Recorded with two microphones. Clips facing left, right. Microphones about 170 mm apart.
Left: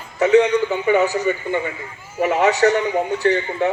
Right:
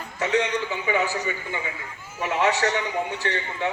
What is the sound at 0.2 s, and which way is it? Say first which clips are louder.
Speech: left 10 dB; 45° left (ahead or behind).